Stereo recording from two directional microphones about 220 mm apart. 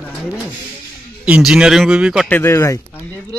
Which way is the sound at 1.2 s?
5° right (ahead or behind).